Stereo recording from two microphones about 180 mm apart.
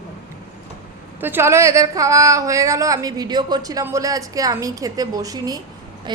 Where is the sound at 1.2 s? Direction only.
10° right (ahead or behind).